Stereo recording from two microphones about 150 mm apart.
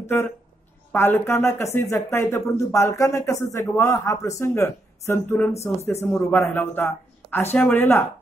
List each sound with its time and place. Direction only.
0.9 s speech: 15° left (ahead or behind)